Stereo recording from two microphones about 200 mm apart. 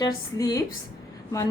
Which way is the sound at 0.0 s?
20° left (ahead or behind).